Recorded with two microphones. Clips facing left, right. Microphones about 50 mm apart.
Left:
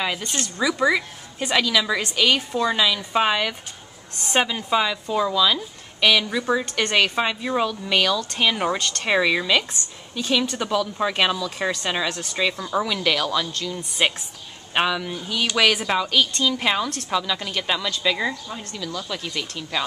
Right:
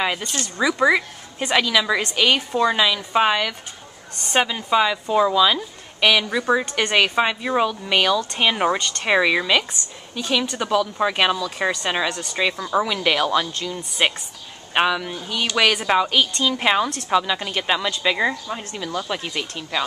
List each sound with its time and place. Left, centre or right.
0.6 s speech: centre
8.7 s speech: centre
12.4 s speech: centre
13.7 s speech: centre
15.9 s a woman's voice: centre